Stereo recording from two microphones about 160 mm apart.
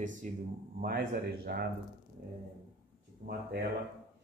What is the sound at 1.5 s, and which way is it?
Speech, 80° right.